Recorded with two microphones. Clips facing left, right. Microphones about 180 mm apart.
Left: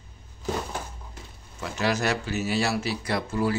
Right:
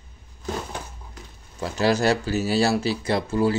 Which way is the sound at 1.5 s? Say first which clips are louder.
Right 5 dB; 35° right (ahead or behind).